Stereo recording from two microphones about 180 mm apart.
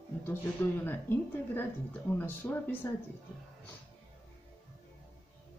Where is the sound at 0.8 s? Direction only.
10° left (ahead or behind).